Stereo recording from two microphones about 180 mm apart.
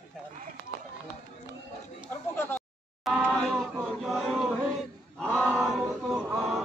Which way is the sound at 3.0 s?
Centre (ahead or behind).